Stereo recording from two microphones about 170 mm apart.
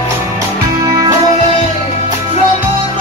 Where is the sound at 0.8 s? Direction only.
20° right (ahead or behind).